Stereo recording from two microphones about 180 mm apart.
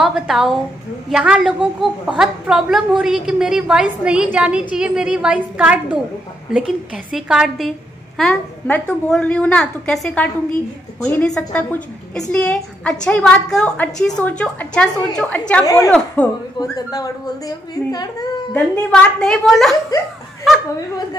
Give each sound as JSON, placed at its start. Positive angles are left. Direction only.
{"t": 0.0, "sound": "a woman's voice", "side_deg": 0}
{"t": 7.1, "sound": "a woman's voice", "side_deg": -5}
{"t": 16.5, "sound": "a woman's voice", "side_deg": 20}
{"t": 18.9, "sound": "a woman's voice", "side_deg": 0}